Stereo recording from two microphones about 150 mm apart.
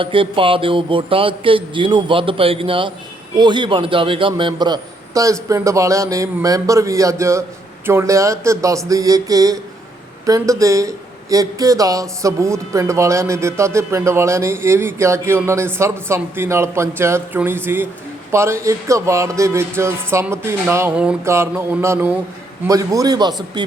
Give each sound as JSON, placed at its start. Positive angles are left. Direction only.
{"t": 0.0, "sound": "a man's voice", "side_deg": -35}